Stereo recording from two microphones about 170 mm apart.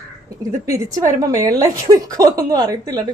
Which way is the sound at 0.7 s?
20° right (ahead or behind).